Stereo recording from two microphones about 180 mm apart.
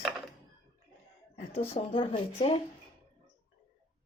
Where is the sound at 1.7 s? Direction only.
30° left (ahead or behind).